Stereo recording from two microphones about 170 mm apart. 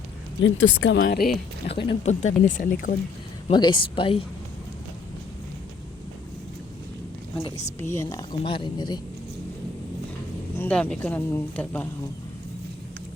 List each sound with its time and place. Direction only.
0.4 s speech: 90° left
1.0 s speech: 60° left (ahead or behind)
1.6 s speech: 30° left (ahead or behind)
2.2 s speech: 45° left (ahead or behind)
3.5 s speech: 25° left (ahead or behind)
7.4 s speech: 40° left (ahead or behind)
7.8 s speech: 15° left (ahead or behind)
8.4 s speech: 30° left (ahead or behind)
10.6 s speech: 5° left (ahead or behind)